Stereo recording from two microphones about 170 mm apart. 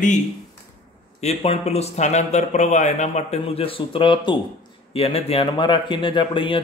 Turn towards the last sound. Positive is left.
turn(degrees=30)  # may be behind; listen again after turning